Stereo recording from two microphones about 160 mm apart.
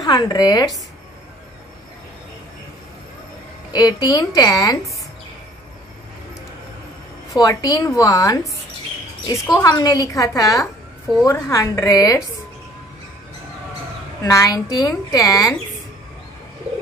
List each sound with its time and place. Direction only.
0.0 s speech: 25° left (ahead or behind)
3.7 s speech: 25° left (ahead or behind)
7.3 s speech: 25° left (ahead or behind)
14.2 s speech: 20° left (ahead or behind)